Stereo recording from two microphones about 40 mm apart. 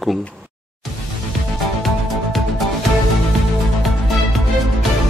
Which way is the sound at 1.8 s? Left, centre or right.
Centre.